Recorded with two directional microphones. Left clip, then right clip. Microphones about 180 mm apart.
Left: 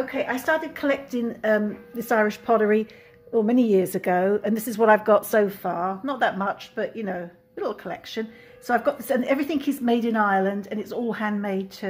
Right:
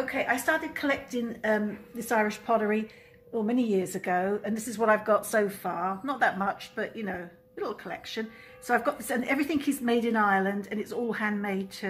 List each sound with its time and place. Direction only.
0.0 s a woman's voice: 55° left (ahead or behind)